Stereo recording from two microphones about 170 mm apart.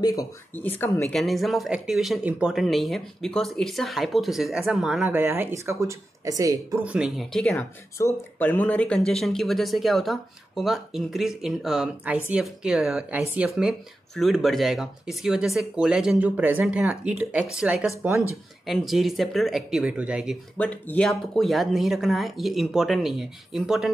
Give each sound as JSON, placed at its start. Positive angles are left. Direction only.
{"t": 0.0, "sound": "speech", "side_deg": 20}
{"t": 1.1, "sound": "speech", "side_deg": 0}
{"t": 5.2, "sound": "speech", "side_deg": -15}
{"t": 6.8, "sound": "speech", "side_deg": -5}
{"t": 20.5, "sound": "speech", "side_deg": 10}